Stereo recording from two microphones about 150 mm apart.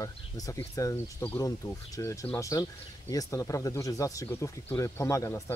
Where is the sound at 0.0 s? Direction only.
20° left (ahead or behind).